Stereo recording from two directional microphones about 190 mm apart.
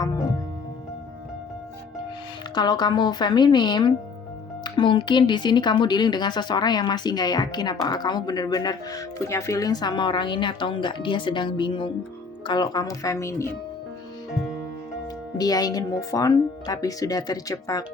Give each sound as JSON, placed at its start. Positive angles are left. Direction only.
{"t": 2.6, "sound": "speech", "side_deg": 20}
{"t": 15.4, "sound": "speech", "side_deg": 20}